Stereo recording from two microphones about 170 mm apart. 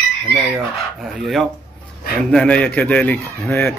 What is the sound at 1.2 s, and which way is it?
Speech, centre (ahead or behind).